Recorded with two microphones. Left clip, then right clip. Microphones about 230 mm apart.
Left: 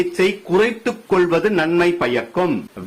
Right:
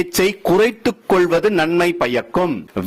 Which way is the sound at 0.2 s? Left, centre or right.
Right.